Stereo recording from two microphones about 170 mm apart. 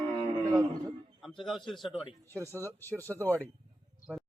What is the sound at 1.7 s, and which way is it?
Speech, centre (ahead or behind).